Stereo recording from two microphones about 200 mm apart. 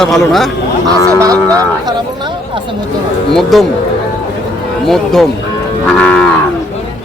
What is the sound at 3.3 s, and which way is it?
Speech, centre (ahead or behind).